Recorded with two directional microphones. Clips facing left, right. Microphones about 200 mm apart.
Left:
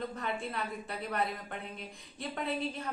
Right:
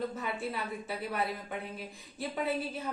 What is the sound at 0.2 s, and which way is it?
A woman's voice, 5° right (ahead or behind).